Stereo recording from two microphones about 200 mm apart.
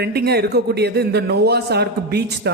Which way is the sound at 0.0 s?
55° right (ahead or behind).